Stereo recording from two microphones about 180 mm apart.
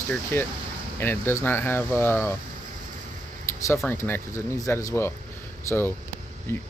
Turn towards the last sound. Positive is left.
turn(degrees=15)  # may be behind; listen again after turning